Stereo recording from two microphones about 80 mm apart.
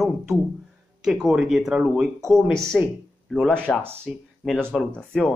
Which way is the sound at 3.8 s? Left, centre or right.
Right.